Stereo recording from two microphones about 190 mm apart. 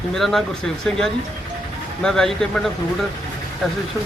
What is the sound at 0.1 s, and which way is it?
Speech, centre (ahead or behind).